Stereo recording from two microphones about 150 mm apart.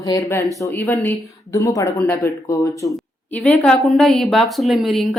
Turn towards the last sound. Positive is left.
turn(degrees=0)  # may be behind; listen again after turning